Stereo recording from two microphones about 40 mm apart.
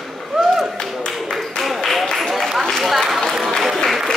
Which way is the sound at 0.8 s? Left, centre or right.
Centre.